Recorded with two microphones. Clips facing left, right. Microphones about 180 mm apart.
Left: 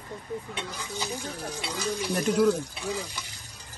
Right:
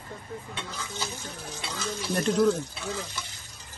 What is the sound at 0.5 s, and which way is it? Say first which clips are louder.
Speech: left 2 dB; 15° left (ahead or behind).